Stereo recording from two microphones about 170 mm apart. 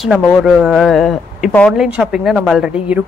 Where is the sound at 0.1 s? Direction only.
Centre (ahead or behind).